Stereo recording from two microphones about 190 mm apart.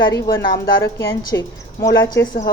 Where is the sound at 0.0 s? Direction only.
15° left (ahead or behind).